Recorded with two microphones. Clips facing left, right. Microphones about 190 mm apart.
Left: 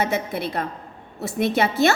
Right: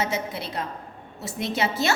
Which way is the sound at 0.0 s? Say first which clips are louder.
Left 4 dB; 55° left (ahead or behind).